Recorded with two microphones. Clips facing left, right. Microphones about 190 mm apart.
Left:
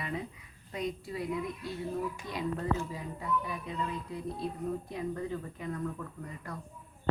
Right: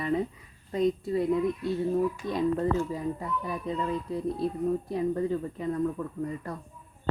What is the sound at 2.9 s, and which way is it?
Speech, 40° right (ahead or behind).